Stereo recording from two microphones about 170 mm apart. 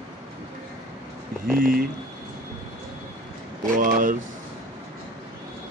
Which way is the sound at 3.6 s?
50° right (ahead or behind).